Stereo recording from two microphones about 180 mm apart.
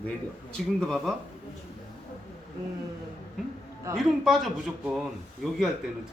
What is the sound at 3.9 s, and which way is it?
Speech, centre (ahead or behind).